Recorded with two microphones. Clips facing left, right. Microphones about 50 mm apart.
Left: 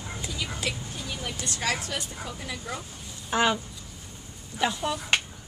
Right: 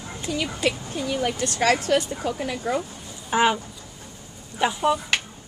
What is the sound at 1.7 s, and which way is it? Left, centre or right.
A woman's voice, right.